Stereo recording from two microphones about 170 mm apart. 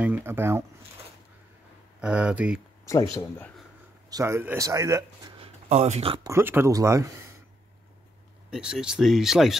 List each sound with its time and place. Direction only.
0.0 s speech: 10° right (ahead or behind)
2.0 s speech: 5° right (ahead or behind)
3.2 s speech: 10° left (ahead or behind)
4.1 s speech: 15° right (ahead or behind)
5.4 s speech: 40° right (ahead or behind)
6.2 s speech: 15° right (ahead or behind)
8.5 s speech: 5° right (ahead or behind)